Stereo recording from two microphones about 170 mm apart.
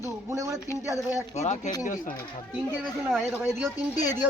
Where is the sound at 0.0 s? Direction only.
15° right (ahead or behind).